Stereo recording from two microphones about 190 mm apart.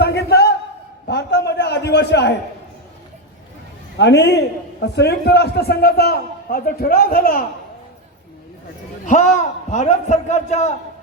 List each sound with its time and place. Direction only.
0.0 s a sound: 60° left (ahead or behind)
3.9 s a man's voice: 65° left (ahead or behind)
9.0 s a man's voice: 40° left (ahead or behind)